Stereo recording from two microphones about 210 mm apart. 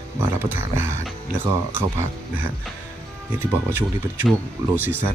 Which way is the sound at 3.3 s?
10° right (ahead or behind).